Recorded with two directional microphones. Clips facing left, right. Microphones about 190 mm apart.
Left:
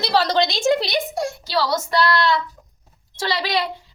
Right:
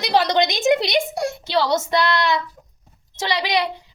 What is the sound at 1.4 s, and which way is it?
Female singing, 25° right (ahead or behind).